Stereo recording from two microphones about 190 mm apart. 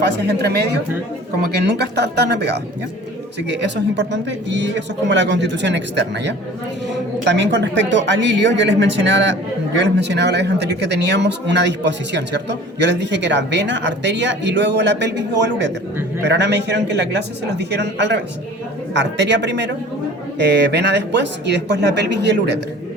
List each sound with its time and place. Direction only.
0.0 s speech: 65° right (ahead or behind)